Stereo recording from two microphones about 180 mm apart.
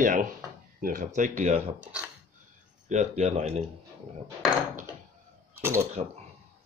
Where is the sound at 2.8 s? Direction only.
40° right (ahead or behind).